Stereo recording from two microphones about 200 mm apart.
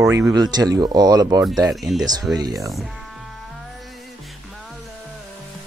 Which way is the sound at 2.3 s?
15° right (ahead or behind).